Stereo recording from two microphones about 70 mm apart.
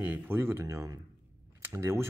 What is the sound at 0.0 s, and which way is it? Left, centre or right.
Speech, right.